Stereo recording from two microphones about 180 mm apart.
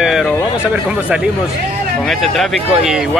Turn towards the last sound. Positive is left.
turn(degrees=0)  # may be behind; listen again after turning